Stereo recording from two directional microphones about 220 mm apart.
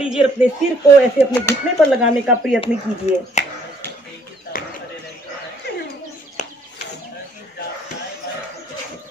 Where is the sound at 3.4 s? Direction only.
30° left (ahead or behind).